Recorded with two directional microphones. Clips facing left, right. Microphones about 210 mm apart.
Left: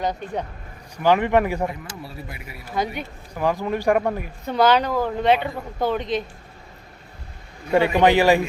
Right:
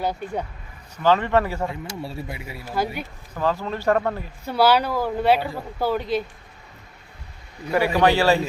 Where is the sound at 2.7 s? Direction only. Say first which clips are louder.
Even; 5° right (ahead or behind).